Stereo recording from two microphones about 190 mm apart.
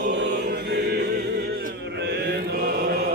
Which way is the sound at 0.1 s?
65° right (ahead or behind).